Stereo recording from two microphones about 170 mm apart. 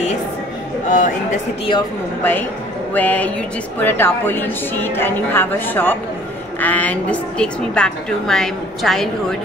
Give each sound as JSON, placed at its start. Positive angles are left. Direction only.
{"t": 0.8, "sound": "speech", "side_deg": 50}
{"t": 2.9, "sound": "a woman's voice", "side_deg": 10}